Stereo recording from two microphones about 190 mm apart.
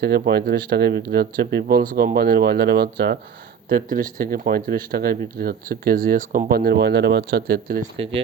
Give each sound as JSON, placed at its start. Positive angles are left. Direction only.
{"t": 0.0, "sound": "speech", "side_deg": -55}
{"t": 7.9, "sound": "speech", "side_deg": -30}